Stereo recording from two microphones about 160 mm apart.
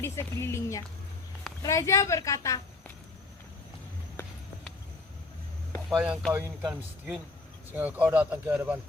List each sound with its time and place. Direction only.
0.0 s a woman's voice: 15° left (ahead or behind)
5.9 s speech: centre (ahead or behind)
6.3 s speech: 15° right (ahead or behind)
6.7 s speech: 5° right (ahead or behind)